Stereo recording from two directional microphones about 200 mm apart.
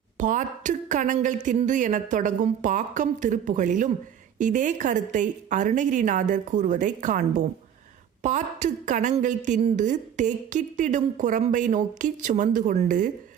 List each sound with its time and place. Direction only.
0.2 s a woman's voice: 40° right (ahead or behind)